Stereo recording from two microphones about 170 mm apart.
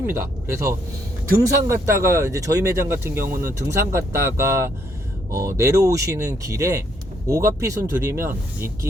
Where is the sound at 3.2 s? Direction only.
50° right (ahead or behind).